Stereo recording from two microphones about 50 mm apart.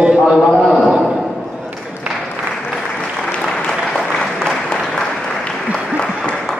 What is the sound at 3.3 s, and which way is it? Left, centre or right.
Applause, centre.